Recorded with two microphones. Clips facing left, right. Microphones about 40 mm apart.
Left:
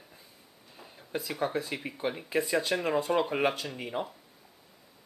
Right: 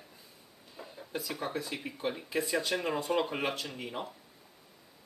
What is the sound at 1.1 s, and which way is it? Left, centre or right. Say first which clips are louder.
Speech: left 5 dB; centre.